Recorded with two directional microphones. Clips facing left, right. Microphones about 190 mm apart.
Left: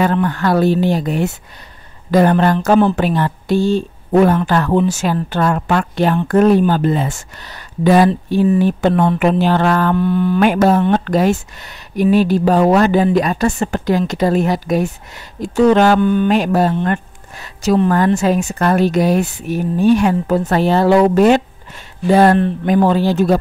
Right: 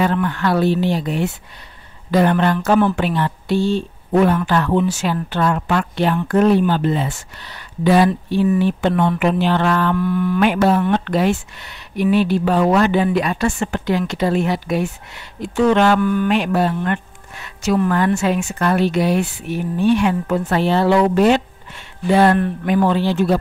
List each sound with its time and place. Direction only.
0.0 s a woman's voice: 40° left (ahead or behind)
9.9 s mantra: 30° left (ahead or behind)
10.4 s a woman's voice: 45° left (ahead or behind)
16.0 s mantra: 25° left (ahead or behind)
16.3 s speech: 40° left (ahead or behind)